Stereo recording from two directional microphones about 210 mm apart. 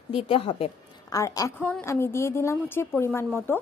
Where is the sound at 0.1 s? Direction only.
25° left (ahead or behind).